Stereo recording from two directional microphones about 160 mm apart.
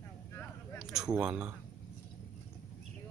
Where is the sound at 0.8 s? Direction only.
5° right (ahead or behind).